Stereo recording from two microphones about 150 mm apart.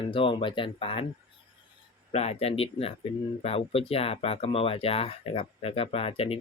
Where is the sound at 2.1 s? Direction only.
45° left (ahead or behind).